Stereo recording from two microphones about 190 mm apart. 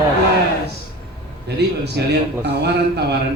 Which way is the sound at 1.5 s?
60° right (ahead or behind).